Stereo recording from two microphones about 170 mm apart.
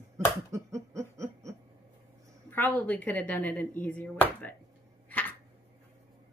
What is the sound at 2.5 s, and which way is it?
Speech, 10° left (ahead or behind).